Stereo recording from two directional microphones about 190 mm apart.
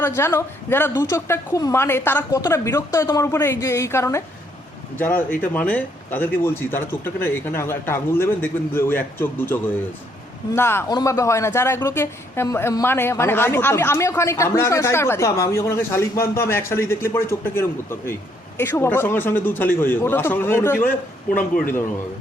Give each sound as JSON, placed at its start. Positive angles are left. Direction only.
{"t": 0.0, "sound": "speech", "side_deg": 15}
{"t": 21.3, "sound": "a man's voice", "side_deg": 50}